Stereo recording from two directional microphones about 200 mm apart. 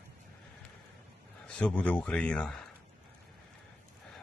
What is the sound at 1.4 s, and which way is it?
A man's voice, 5° left (ahead or behind).